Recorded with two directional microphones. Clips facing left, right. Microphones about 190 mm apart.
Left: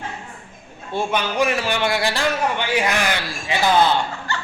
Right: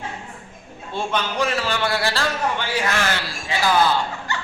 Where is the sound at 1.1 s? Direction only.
15° left (ahead or behind).